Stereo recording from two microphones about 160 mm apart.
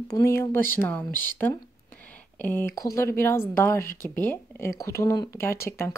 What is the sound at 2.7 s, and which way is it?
A woman's voice, 20° left (ahead or behind).